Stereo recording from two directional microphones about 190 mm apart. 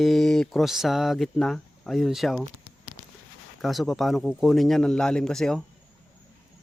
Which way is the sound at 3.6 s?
Centre (ahead or behind).